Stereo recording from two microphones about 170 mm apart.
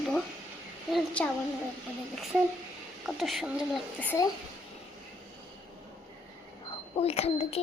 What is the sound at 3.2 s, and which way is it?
Speech, centre (ahead or behind).